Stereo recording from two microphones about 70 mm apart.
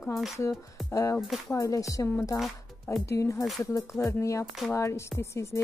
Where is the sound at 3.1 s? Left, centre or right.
Left.